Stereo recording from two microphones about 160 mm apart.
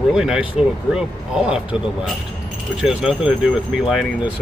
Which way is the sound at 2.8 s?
5° right (ahead or behind).